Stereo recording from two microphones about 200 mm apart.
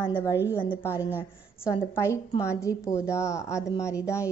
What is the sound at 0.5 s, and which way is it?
Speech, 25° left (ahead or behind).